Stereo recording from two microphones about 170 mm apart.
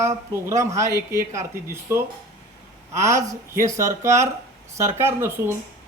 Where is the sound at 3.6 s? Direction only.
15° right (ahead or behind).